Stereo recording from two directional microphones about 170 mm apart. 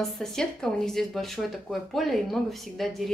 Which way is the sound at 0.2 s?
5° left (ahead or behind).